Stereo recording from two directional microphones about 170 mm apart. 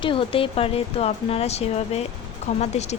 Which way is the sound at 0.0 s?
30° left (ahead or behind).